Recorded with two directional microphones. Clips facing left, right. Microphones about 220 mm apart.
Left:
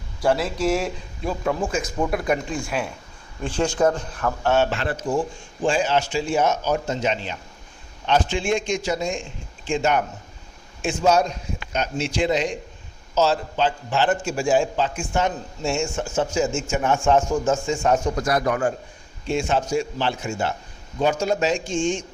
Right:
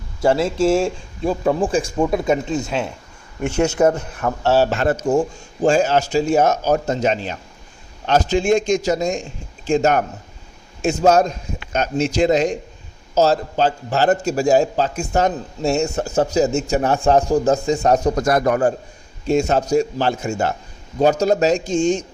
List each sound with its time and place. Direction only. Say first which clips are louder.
0.2 s speech: right 5 dB; 25° right (ahead or behind)